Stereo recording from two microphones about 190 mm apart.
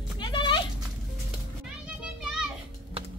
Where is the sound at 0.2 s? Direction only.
25° left (ahead or behind).